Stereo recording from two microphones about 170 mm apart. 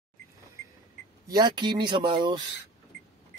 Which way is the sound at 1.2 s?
25° right (ahead or behind).